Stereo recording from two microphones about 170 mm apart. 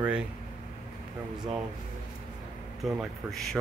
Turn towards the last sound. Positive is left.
turn(degrees=0)  # may be behind; listen again after turning